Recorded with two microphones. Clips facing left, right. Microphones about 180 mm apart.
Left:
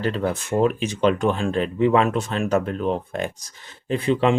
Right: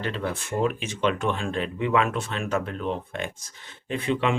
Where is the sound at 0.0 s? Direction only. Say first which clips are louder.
Left 6 dB; 40° left (ahead or behind).